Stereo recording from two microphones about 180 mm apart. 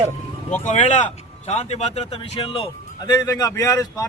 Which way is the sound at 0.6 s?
40° left (ahead or behind).